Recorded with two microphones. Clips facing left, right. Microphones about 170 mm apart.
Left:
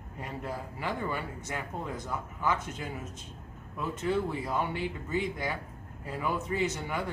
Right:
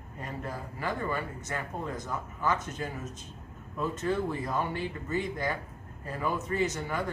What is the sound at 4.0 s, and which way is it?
A man's voice, 15° left (ahead or behind).